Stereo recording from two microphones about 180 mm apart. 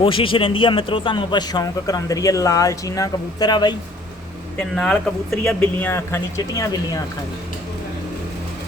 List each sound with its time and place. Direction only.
0.0 s a man's voice: 30° left (ahead or behind)
4.5 s a man's voice: 5° left (ahead or behind)